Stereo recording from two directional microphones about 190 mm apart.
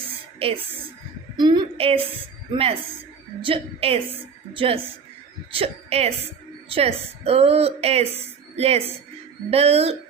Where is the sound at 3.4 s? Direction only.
30° right (ahead or behind).